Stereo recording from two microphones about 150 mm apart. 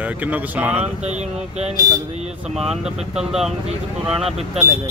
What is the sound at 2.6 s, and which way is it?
Speech, centre (ahead or behind).